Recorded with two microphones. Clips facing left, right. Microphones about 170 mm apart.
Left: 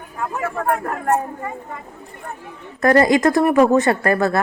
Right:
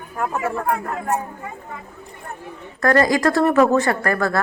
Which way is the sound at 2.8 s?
20° left (ahead or behind).